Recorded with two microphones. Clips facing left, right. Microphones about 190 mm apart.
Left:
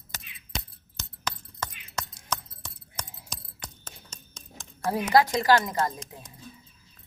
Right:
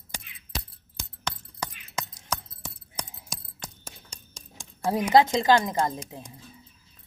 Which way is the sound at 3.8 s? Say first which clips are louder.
Right 1 dB; 10° right (ahead or behind).